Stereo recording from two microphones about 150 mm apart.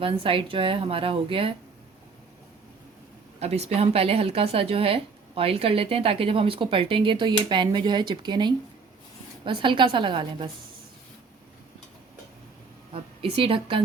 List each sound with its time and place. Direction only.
0.0 s speech: 35° right (ahead or behind)
3.4 s speech: 45° right (ahead or behind)
12.9 s a woman's voice: 40° right (ahead or behind)